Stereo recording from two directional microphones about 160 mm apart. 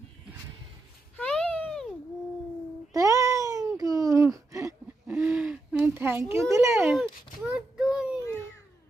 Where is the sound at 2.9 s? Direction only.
20° right (ahead or behind).